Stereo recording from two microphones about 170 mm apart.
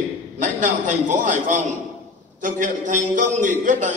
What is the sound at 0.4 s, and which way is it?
A man's voice, 50° right (ahead or behind).